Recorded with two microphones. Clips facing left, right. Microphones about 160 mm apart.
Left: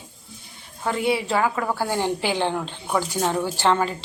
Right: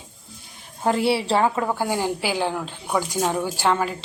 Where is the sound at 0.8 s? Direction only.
35° right (ahead or behind).